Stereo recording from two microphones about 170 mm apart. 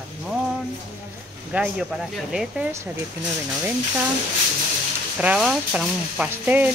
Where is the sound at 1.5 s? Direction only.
5° right (ahead or behind).